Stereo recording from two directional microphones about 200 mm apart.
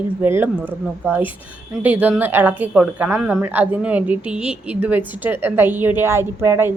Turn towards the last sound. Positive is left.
turn(degrees=-10)  # may be behind; listen again after turning